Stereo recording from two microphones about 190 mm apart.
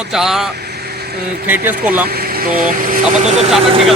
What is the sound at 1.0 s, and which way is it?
Vehicle, 55° right (ahead or behind).